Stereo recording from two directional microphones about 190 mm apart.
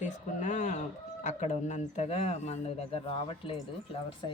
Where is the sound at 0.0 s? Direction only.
40° left (ahead or behind).